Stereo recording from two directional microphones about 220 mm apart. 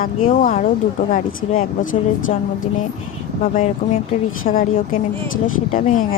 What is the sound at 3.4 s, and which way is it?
A woman's voice, 30° left (ahead or behind).